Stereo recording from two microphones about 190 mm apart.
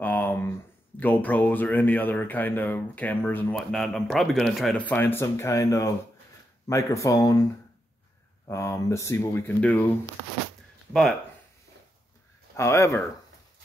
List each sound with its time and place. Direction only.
0.0 s a sound: 10° left (ahead or behind)
0.9 s speech: 10° left (ahead or behind)
8.5 s speech: 15° left (ahead or behind)
12.5 s speech: 15° left (ahead or behind)